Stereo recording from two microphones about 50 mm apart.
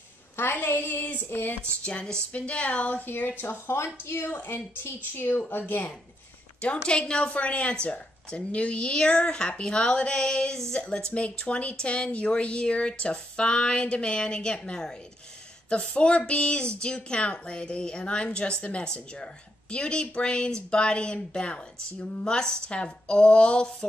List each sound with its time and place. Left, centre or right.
0.4 s a woman's voice: left
1.6 s speech: left
3.1 s a woman's voice: left
6.6 s speech: left